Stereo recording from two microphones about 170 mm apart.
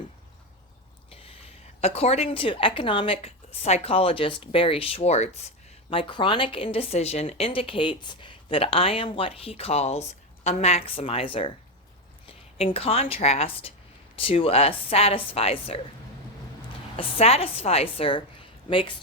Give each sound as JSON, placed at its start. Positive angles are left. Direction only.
{"t": 1.1, "sound": "a woman's voice", "side_deg": 35}
{"t": 17.0, "sound": "a woman's voice", "side_deg": 35}